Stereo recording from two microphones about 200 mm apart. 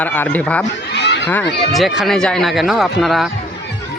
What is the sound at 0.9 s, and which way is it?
Chatter, 60° left (ahead or behind).